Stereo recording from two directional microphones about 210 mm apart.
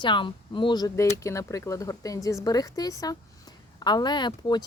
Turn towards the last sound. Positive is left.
turn(degrees=20)  # may be behind; listen again after turning